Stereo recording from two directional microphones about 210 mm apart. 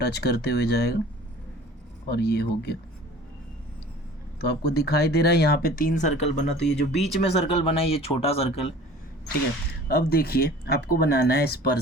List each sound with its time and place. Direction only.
0.0 s speech: 50° left (ahead or behind)
2.0 s speech: 50° left (ahead or behind)
4.4 s speech: 50° left (ahead or behind); by 8.7 s 30° left (ahead or behind)
9.9 s speech: 45° left (ahead or behind)